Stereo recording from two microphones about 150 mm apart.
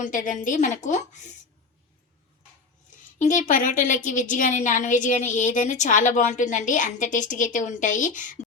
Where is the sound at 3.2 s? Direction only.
60° left (ahead or behind).